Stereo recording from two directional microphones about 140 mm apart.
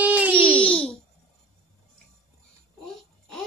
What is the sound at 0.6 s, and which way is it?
Babbling, 10° left (ahead or behind).